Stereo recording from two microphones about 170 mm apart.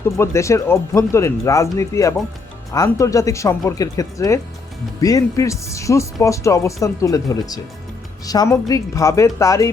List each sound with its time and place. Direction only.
0.0 s speech: 15° left (ahead or behind)